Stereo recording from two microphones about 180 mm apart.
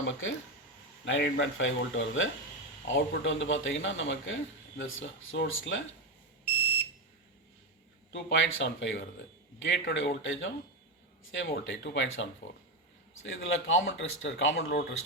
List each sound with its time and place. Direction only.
0.0 s speech: 90° left
8.1 s speech: 90° left; by 14.8 s 65° left (ahead or behind)